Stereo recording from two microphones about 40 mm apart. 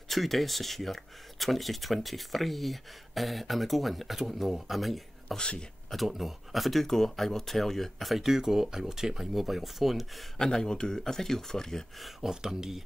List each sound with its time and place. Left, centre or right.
0.1 s speech: centre
5.4 s speech: left
5.9 s speech: centre
8.3 s speech: centre
10.3 s speech: centre
12.0 s speech: centre